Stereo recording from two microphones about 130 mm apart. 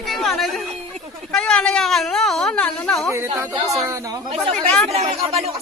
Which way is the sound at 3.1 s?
20° right (ahead or behind).